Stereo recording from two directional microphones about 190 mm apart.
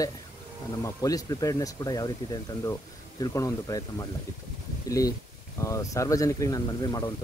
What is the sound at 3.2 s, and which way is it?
Speech, 20° left (ahead or behind).